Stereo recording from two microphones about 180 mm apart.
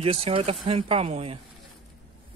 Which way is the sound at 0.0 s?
30° right (ahead or behind).